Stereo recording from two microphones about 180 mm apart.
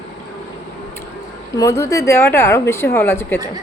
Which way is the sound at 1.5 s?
20° left (ahead or behind).